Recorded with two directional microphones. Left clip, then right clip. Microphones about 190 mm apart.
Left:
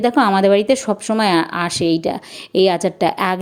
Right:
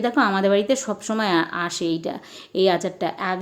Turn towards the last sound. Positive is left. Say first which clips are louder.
# left 7 dB
turn(degrees=40)  # may be behind; listen again after turning